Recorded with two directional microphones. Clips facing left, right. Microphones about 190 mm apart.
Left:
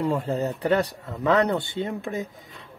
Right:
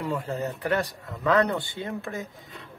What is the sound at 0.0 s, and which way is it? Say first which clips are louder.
Speech: left 5 dB; 30° left (ahead or behind).